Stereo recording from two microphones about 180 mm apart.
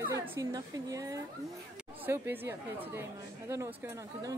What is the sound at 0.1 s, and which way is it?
Speech, 15° right (ahead or behind).